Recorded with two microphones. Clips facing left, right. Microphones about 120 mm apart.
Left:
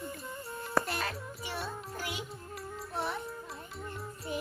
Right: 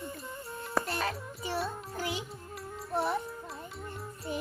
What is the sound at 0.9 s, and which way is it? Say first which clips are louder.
Music: right 2 dB; 30° right (ahead or behind).